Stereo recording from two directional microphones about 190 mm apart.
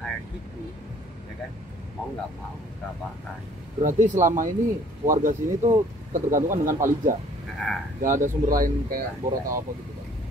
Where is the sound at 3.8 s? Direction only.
45° right (ahead or behind).